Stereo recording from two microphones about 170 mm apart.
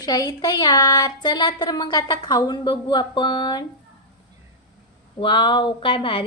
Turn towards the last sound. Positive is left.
turn(degrees=30)  # may be behind; listen again after turning